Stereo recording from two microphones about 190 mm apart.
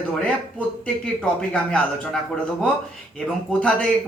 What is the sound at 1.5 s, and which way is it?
Speech, 5° left (ahead or behind).